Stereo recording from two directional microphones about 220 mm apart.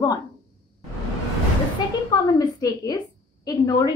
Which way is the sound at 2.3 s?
15° left (ahead or behind).